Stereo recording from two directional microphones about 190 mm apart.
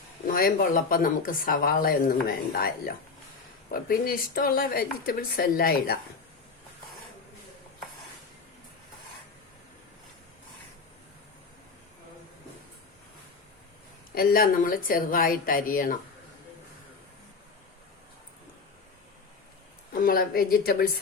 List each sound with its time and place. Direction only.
0.3 s speech: 50° left (ahead or behind)
14.2 s speech: 50° left (ahead or behind)
19.9 s speech: 50° left (ahead or behind)